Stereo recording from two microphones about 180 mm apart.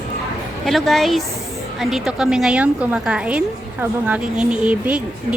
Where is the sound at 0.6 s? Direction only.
Centre (ahead or behind).